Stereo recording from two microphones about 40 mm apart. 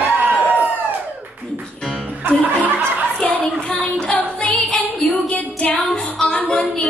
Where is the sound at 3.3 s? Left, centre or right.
Left.